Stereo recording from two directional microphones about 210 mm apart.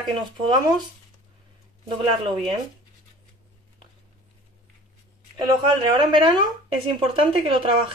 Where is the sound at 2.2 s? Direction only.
25° right (ahead or behind).